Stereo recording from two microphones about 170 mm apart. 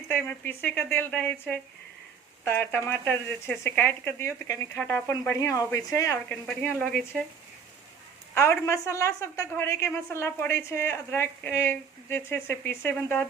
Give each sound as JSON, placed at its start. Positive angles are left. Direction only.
{"t": 0.1, "sound": "a woman's voice", "side_deg": 10}
{"t": 6.2, "sound": "a woman's voice", "side_deg": 5}
{"t": 8.4, "sound": "a woman's voice", "side_deg": 15}